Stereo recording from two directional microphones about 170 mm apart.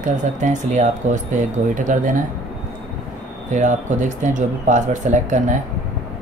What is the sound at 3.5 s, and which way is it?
Speech, 45° right (ahead or behind).